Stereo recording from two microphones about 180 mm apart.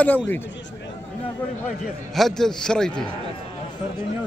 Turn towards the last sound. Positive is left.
turn(degrees=5)  # may be behind; listen again after turning